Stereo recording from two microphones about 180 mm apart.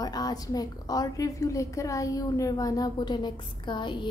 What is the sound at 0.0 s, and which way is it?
A woman's voice, 20° left (ahead or behind).